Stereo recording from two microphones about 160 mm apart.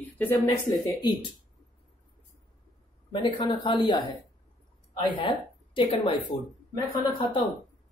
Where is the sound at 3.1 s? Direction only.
30° left (ahead or behind).